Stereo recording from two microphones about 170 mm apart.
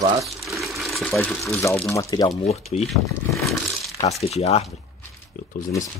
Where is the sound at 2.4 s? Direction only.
40° left (ahead or behind).